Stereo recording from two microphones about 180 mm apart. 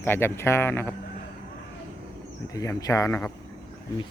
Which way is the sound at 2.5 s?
20° left (ahead or behind).